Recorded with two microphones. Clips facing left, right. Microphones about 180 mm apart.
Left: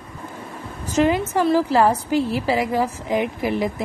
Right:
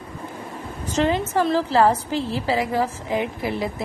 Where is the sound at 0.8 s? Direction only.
10° left (ahead or behind).